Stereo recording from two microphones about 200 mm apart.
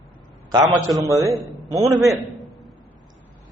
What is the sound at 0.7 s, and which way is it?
Speech, centre (ahead or behind).